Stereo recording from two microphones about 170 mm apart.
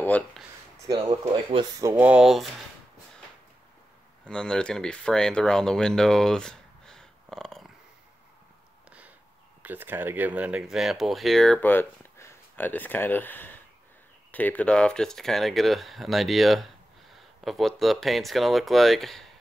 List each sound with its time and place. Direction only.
0.8 s speech: 25° right (ahead or behind); by 2.5 s centre (ahead or behind)
4.2 s speech: 5° left (ahead or behind)
9.6 s speech: 10° right (ahead or behind)